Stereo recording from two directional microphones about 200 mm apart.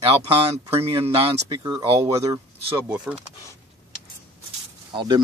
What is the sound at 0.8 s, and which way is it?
Speech, 30° right (ahead or behind).